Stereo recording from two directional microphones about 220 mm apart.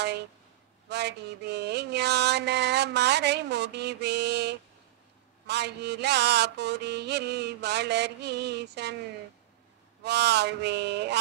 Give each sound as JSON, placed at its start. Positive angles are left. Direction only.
{"t": 0.8, "sound": "mantra", "side_deg": -50}
{"t": 10.0, "sound": "mantra", "side_deg": -50}